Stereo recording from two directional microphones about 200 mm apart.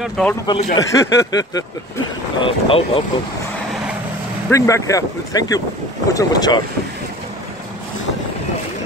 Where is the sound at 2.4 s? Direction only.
25° left (ahead or behind).